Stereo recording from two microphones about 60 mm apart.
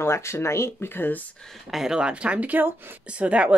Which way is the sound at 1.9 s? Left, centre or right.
Centre.